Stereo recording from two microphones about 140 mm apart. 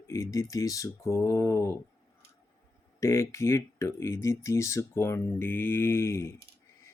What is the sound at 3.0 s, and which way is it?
Speech, 20° left (ahead or behind).